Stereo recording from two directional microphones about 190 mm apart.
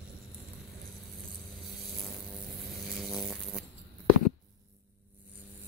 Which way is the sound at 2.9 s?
Centre (ahead or behind).